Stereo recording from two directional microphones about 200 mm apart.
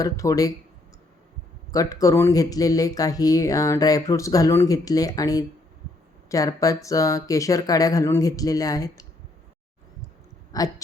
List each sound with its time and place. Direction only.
0.0 s speech: 15° left (ahead or behind)
1.7 s speech: 15° left (ahead or behind)
10.5 s a sound: 20° left (ahead or behind)